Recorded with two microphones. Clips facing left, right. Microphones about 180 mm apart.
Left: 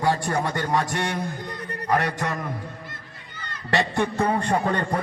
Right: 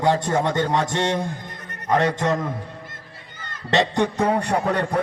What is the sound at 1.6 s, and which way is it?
Music, 35° left (ahead or behind).